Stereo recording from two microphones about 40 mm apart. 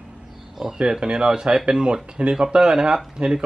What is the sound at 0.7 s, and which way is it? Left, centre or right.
Speech, right.